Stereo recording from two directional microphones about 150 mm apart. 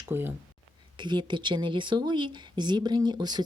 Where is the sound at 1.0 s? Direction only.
30° right (ahead or behind).